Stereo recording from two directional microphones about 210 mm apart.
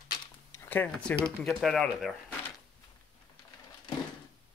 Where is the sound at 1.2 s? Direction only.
Centre (ahead or behind).